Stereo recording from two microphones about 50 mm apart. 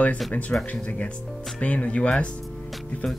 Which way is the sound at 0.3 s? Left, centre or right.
Left.